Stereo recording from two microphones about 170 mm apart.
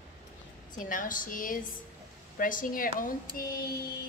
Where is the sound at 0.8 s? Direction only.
50° left (ahead or behind).